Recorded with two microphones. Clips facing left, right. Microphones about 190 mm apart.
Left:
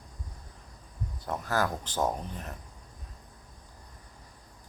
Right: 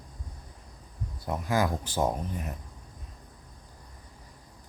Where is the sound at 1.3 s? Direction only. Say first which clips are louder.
Right 2 dB; 10° right (ahead or behind).